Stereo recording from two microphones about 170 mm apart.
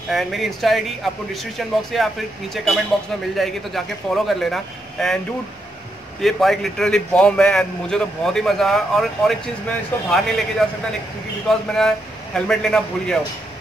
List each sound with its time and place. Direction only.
0.1 s a man's voice: centre (ahead or behind)
6.2 s a man's voice: centre (ahead or behind)